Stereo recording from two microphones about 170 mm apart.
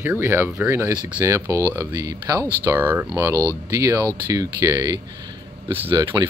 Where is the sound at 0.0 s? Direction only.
15° right (ahead or behind).